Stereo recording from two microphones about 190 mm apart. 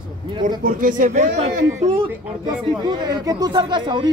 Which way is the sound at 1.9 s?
25° right (ahead or behind).